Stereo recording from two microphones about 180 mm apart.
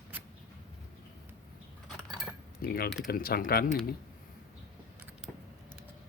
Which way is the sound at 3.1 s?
55° left (ahead or behind).